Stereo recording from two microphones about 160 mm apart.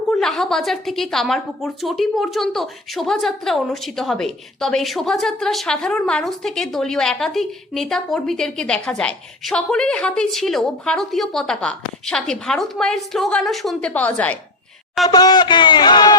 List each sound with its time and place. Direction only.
0.1 s a woman's voice: centre (ahead or behind)
15.0 s speech: 25° left (ahead or behind)